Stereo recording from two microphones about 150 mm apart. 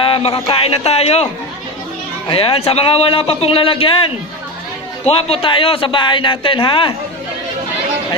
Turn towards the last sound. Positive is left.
turn(degrees=35)  # may be behind; listen again after turning